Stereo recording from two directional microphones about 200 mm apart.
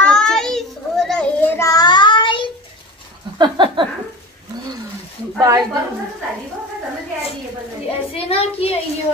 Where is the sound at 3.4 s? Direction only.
25° right (ahead or behind).